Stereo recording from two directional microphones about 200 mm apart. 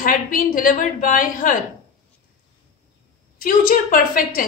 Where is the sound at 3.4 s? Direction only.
45° left (ahead or behind).